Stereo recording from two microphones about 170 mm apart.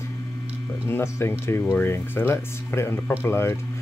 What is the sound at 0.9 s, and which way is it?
Speech, 15° left (ahead or behind).